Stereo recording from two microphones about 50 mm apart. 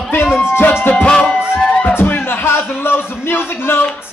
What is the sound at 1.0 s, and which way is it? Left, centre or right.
Music, centre.